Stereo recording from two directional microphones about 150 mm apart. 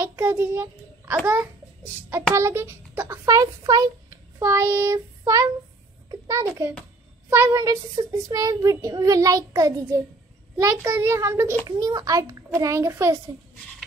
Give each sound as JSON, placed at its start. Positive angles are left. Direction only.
{"t": 0.0, "sound": "a child's voice", "side_deg": -15}